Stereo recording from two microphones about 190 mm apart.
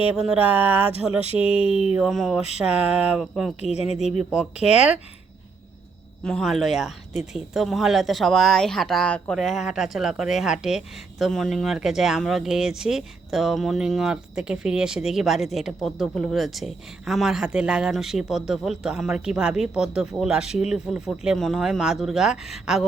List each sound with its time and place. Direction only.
0.2 s speech: 5° right (ahead or behind)
1.7 s speech: 35° left (ahead or behind)
2.0 s speech: centre (ahead or behind)
3.6 s speech: 35° left (ahead or behind)
4.2 s speech: 5° right (ahead or behind)
6.2 s speech: centre (ahead or behind)